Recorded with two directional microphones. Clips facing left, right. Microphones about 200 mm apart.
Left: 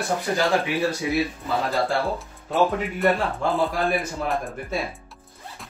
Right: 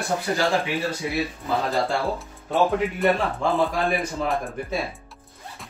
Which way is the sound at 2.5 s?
Centre (ahead or behind).